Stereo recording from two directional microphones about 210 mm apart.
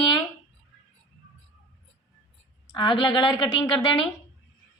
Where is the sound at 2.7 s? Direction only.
20° left (ahead or behind).